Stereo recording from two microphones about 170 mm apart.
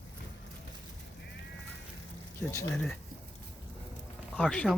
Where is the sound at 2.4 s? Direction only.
15° left (ahead or behind).